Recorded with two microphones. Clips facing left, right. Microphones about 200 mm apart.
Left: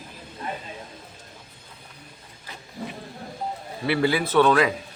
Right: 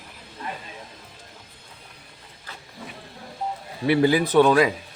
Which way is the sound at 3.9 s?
15° right (ahead or behind).